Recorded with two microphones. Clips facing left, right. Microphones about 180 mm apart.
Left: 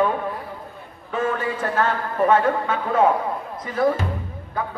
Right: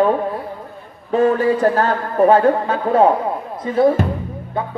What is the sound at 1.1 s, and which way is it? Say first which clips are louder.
A man's voice: right 9 dB; 35° right (ahead or behind).